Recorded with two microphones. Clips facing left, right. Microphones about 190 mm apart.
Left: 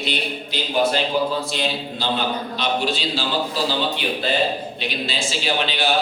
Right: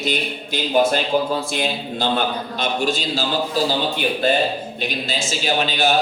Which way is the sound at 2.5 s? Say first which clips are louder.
Right 2 dB; 45° right (ahead or behind).